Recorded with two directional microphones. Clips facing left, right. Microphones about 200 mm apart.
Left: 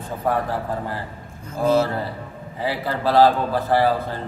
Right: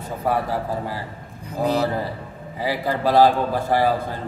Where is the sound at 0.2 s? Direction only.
10° right (ahead or behind).